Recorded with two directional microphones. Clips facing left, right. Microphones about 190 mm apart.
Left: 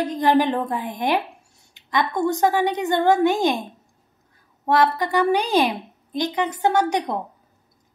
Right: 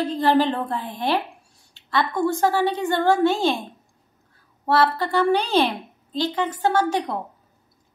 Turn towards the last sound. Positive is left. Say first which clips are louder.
# left 1 dB
turn(degrees=20)  # may be behind; listen again after turning